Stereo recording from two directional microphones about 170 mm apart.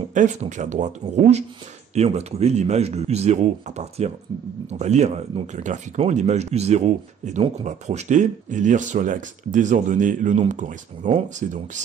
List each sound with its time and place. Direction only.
0.1 s speech: 45° right (ahead or behind)